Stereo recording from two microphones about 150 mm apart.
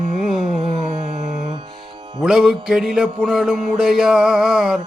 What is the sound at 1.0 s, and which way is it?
Music, 50° right (ahead or behind).